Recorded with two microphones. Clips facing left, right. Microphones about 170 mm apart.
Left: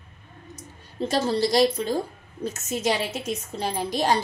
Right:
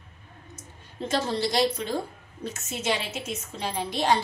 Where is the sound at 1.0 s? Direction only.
35° left (ahead or behind).